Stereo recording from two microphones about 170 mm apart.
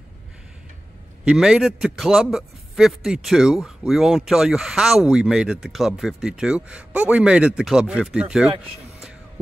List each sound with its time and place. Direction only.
1.2 s speech: 5° right (ahead or behind)